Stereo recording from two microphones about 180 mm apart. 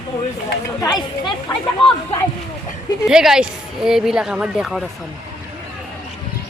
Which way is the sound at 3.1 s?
5° right (ahead or behind).